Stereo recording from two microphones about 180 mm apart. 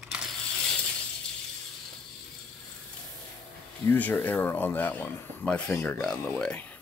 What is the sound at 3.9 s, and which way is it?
Speech, 10° left (ahead or behind).